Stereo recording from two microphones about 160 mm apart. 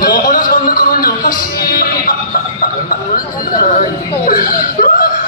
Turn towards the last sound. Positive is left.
turn(degrees=60)  # may be behind; listen again after turning